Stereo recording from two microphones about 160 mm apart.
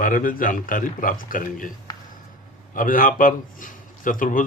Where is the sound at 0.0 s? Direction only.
60° left (ahead or behind).